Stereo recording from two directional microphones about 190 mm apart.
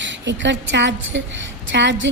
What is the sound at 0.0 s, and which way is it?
A woman's voice, 75° right (ahead or behind).